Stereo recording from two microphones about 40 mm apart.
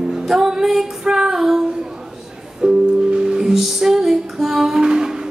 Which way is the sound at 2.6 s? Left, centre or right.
Right.